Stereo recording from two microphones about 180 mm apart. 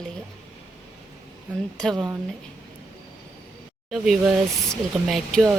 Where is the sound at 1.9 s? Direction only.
25° right (ahead or behind).